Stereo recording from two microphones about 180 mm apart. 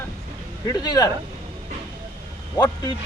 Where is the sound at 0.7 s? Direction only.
20° left (ahead or behind).